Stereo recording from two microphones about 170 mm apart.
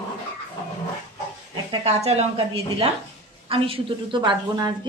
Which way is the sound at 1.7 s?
40° right (ahead or behind).